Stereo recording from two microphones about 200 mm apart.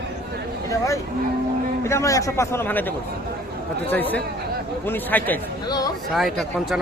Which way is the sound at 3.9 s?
10° left (ahead or behind).